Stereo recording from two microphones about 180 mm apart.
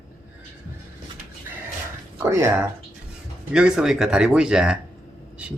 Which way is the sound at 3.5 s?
5° right (ahead or behind).